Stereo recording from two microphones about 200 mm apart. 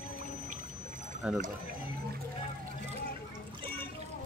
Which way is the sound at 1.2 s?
5° right (ahead or behind).